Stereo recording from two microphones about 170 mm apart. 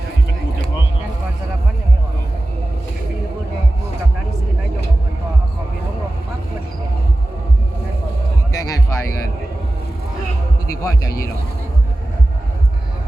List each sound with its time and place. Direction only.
8.5 s music: 20° left (ahead or behind)
10.7 s speech: 20° left (ahead or behind)